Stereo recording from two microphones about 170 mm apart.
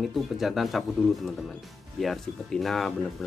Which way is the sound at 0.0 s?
Centre (ahead or behind).